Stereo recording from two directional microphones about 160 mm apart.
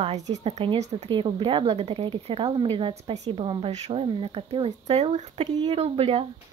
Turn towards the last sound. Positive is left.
turn(degrees=-35)  # may be behind; listen again after turning